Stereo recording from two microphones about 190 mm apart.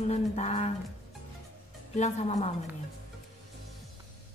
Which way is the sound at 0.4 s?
35° left (ahead or behind).